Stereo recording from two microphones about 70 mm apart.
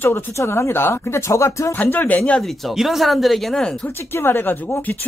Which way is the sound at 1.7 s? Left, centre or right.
Left.